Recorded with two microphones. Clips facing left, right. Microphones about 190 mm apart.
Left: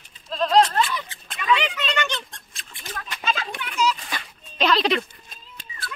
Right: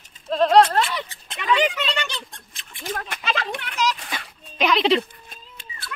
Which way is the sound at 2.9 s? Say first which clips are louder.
Right 6 dB; 50° right (ahead or behind).